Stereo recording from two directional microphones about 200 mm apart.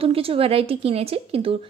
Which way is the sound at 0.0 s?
30° right (ahead or behind).